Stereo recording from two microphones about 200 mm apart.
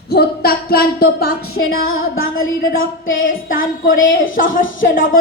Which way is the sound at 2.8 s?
80° left.